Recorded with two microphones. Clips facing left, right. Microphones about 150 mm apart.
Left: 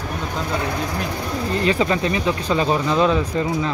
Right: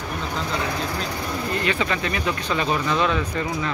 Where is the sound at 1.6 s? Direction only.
30° left (ahead or behind).